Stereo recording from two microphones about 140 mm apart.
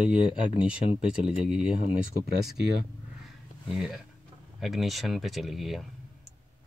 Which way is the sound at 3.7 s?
5° right (ahead or behind).